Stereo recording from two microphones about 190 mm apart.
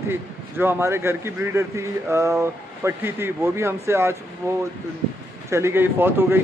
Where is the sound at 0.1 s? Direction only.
10° right (ahead or behind).